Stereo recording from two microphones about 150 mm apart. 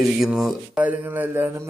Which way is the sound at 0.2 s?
5° right (ahead or behind).